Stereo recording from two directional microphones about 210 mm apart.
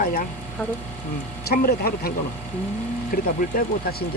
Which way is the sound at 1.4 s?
45° left (ahead or behind).